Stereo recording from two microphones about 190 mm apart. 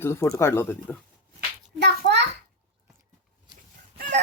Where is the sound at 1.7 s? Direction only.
65° right (ahead or behind).